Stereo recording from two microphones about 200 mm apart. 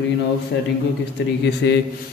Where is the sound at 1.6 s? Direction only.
60° left (ahead or behind).